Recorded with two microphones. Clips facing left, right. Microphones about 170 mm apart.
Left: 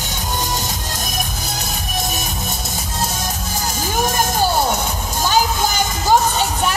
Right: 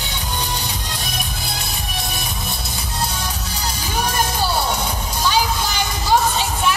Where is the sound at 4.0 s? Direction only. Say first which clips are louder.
Left 3 dB; 45° left (ahead or behind).